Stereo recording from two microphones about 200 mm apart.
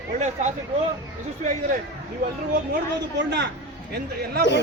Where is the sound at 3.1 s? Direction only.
60° right (ahead or behind).